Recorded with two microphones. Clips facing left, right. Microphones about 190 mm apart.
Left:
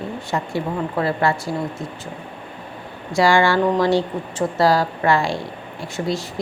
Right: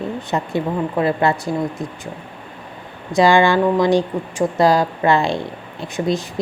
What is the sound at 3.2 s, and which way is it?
A woman's voice, 20° right (ahead or behind).